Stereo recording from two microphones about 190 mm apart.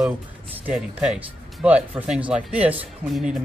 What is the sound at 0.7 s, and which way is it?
Speech, 5° right (ahead or behind).